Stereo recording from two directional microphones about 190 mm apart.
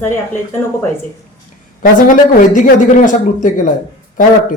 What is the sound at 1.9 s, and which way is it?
Speech, 45° left (ahead or behind).